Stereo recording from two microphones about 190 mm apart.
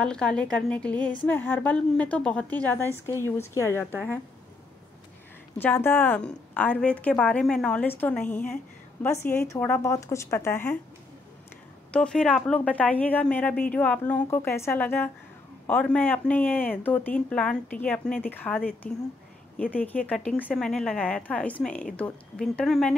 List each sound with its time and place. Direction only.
0.0 s a woman's voice: 5° left (ahead or behind)
5.6 s speech: 10° left (ahead or behind)
11.9 s speech: 5° left (ahead or behind)